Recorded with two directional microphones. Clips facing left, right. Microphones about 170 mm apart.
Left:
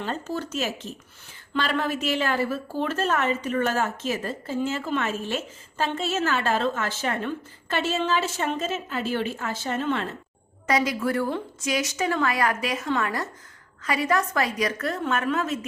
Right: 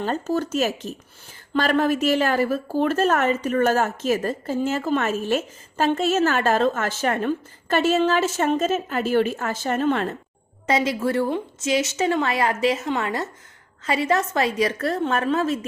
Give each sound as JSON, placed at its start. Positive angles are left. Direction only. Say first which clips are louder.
{"t": 0.0, "sound": "a woman's voice", "louder": "right 6 dB", "side_deg": -40}
{"t": 10.7, "sound": "a woman's voice", "louder": "right 2 dB", "side_deg": -25}